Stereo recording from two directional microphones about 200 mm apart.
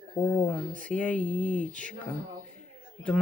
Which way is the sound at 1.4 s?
40° left (ahead or behind).